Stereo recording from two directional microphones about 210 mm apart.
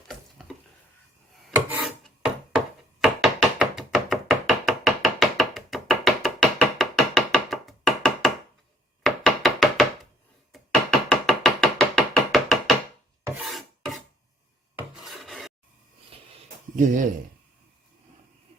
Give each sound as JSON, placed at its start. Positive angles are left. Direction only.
{"t": 0.1, "sound": "tick-tock", "side_deg": 0}
{"t": 1.5, "sound": "filing", "side_deg": 0}
{"t": 3.0, "sound": "knock", "side_deg": 0}
{"t": 9.0, "sound": "chopping", "side_deg": 0}
{"t": 10.5, "sound": "knock", "side_deg": 0}
{"t": 11.1, "sound": "a sound", "side_deg": 0}
{"t": 13.4, "sound": "filing", "side_deg": 0}
{"t": 16.7, "sound": "speech", "side_deg": -40}